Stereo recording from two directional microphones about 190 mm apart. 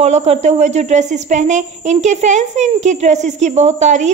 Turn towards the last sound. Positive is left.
turn(degrees=-40)  # may be behind; listen again after turning